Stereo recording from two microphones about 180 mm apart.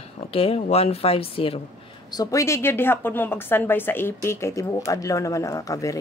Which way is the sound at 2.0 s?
20° left (ahead or behind).